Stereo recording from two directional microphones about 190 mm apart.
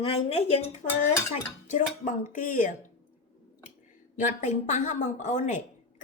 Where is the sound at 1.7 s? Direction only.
45° left (ahead or behind).